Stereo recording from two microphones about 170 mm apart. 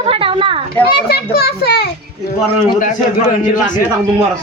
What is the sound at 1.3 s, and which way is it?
Speech, 65° left (ahead or behind).